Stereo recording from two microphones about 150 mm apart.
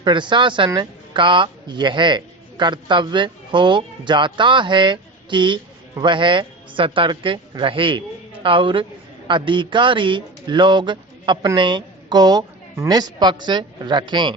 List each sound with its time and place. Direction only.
0.0 s a man's voice: 30° right (ahead or behind)